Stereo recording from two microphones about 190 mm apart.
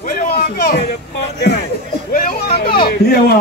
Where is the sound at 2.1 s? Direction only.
50° left (ahead or behind).